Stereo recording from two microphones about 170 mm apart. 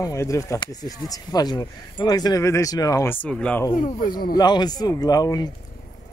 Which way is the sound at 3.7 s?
55° left (ahead or behind).